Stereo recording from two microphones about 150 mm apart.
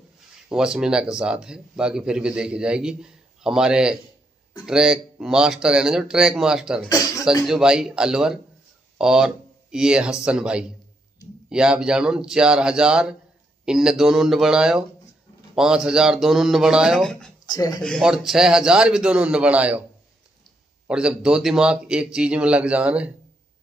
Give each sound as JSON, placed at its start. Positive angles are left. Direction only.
{"t": 0.5, "sound": "speech", "side_deg": -5}
{"t": 17.5, "sound": "speech", "side_deg": 25}
{"t": 18.0, "sound": "speech", "side_deg": -5}
{"t": 20.9, "sound": "speech", "side_deg": -5}